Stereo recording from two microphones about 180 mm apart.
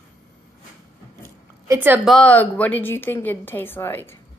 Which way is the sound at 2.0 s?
5° left (ahead or behind).